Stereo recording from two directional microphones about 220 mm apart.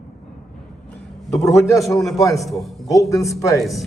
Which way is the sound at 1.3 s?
Centre (ahead or behind).